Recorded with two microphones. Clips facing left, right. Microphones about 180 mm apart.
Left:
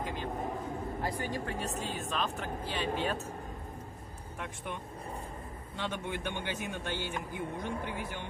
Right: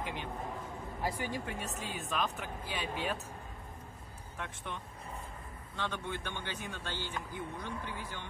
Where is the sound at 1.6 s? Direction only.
45° left (ahead or behind).